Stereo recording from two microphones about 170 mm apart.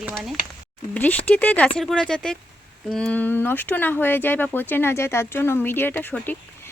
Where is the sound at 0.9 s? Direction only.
10° left (ahead or behind).